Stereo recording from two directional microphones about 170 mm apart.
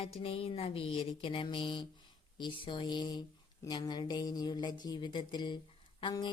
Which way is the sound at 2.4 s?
30° left (ahead or behind).